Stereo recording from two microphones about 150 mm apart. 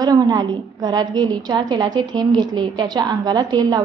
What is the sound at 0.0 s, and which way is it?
A woman's voice, 25° right (ahead or behind).